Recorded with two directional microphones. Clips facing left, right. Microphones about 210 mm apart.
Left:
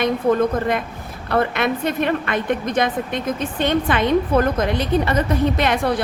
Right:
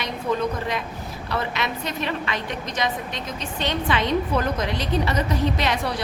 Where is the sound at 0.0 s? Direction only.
50° left (ahead or behind).